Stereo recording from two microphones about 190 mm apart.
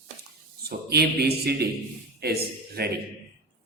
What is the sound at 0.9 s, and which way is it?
A man's voice, 55° right (ahead or behind).